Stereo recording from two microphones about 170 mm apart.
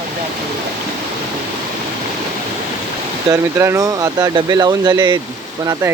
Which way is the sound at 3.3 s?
20° right (ahead or behind).